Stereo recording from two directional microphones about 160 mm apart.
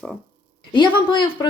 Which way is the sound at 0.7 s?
30° left (ahead or behind).